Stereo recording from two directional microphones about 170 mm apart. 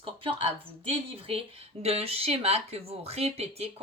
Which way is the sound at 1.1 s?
35° right (ahead or behind).